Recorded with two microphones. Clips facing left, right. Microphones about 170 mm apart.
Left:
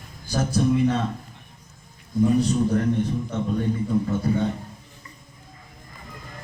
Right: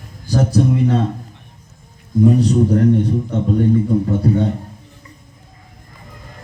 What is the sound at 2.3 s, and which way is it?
A man's voice, 35° right (ahead or behind).